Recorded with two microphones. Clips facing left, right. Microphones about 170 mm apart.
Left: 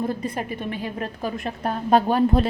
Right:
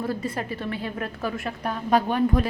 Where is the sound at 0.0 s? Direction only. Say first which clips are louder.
Left 2 dB; 20° left (ahead or behind).